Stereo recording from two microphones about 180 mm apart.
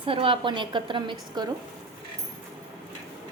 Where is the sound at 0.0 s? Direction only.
30° right (ahead or behind).